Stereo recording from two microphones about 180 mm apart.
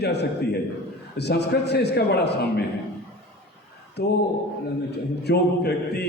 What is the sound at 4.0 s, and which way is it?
A man's voice, 65° left (ahead or behind).